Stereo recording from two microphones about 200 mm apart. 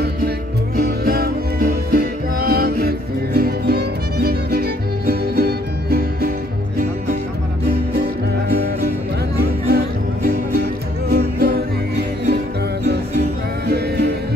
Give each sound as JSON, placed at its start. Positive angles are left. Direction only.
{"t": 0.7, "sound": "music", "side_deg": -50}
{"t": 7.9, "sound": "music", "side_deg": -50}
{"t": 13.7, "sound": "music", "side_deg": -55}